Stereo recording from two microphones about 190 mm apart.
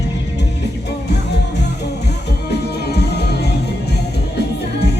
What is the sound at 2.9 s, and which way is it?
Music, 60° left (ahead or behind).